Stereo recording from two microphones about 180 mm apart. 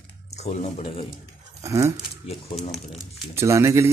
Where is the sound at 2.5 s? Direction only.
30° left (ahead or behind).